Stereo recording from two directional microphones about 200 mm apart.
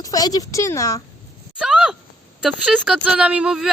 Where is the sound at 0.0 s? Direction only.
20° left (ahead or behind).